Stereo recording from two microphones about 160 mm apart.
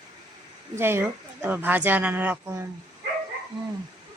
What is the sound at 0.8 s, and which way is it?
Speech, 15° right (ahead or behind).